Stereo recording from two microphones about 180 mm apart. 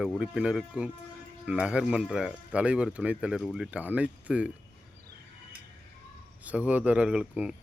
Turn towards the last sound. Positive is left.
turn(degrees=-5)  # may be behind; listen again after turning